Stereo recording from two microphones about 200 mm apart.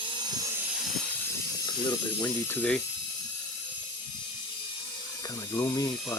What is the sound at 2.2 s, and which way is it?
Speech, 15° left (ahead or behind).